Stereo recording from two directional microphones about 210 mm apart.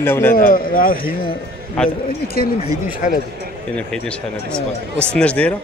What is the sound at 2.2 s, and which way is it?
Speech, 45° left (ahead or behind).